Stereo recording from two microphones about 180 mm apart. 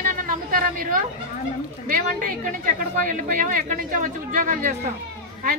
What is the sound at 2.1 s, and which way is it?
Speech, 45° right (ahead or behind).